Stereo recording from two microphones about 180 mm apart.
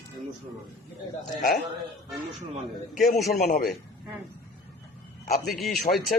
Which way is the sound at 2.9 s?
Centre (ahead or behind).